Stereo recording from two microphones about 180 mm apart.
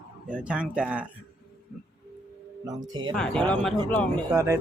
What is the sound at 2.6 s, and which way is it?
Speech, 25° right (ahead or behind).